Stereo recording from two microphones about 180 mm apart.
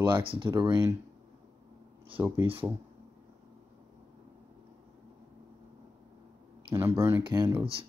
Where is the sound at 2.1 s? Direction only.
10° right (ahead or behind).